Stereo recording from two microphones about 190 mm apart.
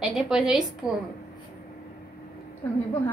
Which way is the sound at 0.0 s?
5° right (ahead or behind).